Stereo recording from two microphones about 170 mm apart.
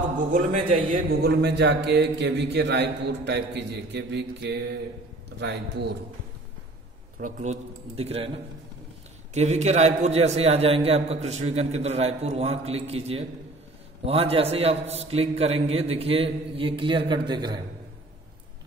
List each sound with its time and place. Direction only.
0.3 s a man's voice: 50° right (ahead or behind)
1.3 s a man's voice: 85° right
7.2 s a man's voice: 50° right (ahead or behind)
9.3 s a man's voice: 40° right (ahead or behind); by 17.6 s 25° right (ahead or behind)